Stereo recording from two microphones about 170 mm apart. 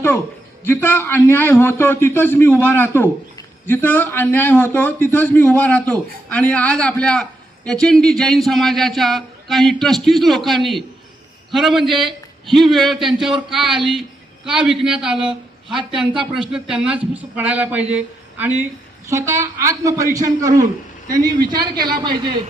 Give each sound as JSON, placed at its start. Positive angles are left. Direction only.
{"t": 0.6, "sound": "a man's voice", "side_deg": 15}